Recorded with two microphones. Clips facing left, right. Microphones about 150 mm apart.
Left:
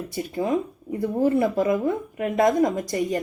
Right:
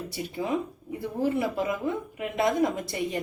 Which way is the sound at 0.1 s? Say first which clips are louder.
Left 6 dB; 45° left (ahead or behind).